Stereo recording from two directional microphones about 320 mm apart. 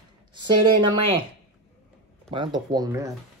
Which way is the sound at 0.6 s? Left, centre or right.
Right.